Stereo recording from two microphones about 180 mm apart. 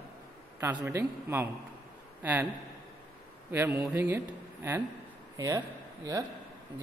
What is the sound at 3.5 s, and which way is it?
Speech, 15° right (ahead or behind).